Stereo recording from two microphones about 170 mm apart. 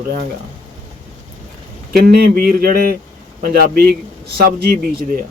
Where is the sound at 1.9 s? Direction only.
65° right (ahead or behind).